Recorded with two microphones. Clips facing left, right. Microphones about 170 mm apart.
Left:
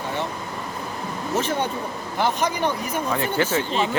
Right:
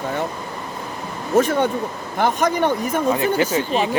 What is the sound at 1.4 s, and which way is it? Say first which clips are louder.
A woman's voice: right 9 dB; 50° right (ahead or behind).